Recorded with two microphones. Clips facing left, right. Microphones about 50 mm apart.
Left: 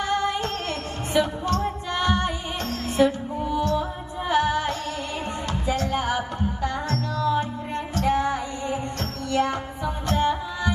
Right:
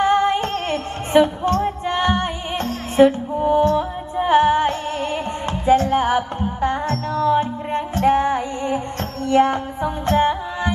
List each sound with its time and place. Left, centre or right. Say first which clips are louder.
0.0 s music: right 8 dB; right